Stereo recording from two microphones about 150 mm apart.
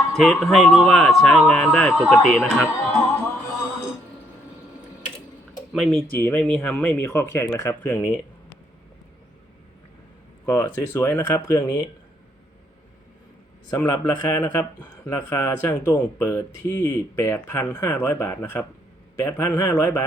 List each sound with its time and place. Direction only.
0.1 s speech: centre (ahead or behind)
5.7 s speech: centre (ahead or behind)
6.1 s speech: 15° left (ahead or behind)
6.4 s speech: 5° left (ahead or behind)
10.4 s speech: 20° left (ahead or behind)
13.7 s speech: 20° left (ahead or behind)